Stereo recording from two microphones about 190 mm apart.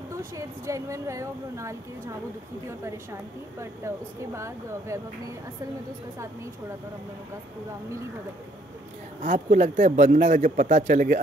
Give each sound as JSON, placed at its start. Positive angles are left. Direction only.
{"t": 0.1, "sound": "a woman's voice", "side_deg": -15}
{"t": 9.2, "sound": "speech", "side_deg": -45}